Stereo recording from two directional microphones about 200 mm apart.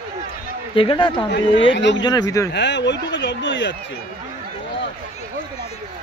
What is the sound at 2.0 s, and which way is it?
Speech, 20° left (ahead or behind).